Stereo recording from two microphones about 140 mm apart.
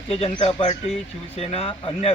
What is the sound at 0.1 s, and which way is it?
Speech, 45° left (ahead or behind).